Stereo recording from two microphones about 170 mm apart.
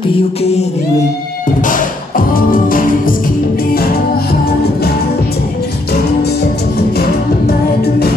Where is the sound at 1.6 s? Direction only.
50° left (ahead or behind).